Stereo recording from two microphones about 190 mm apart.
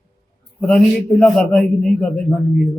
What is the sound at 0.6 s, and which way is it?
A man's voice, 5° left (ahead or behind).